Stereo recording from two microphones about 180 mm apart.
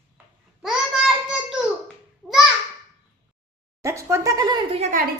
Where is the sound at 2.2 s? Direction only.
Centre (ahead or behind).